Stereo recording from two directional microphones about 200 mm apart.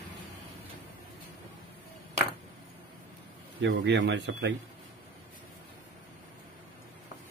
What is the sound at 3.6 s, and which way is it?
Speech, 65° right (ahead or behind).